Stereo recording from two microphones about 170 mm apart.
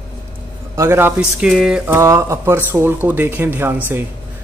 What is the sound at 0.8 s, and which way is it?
Speech, 15° right (ahead or behind).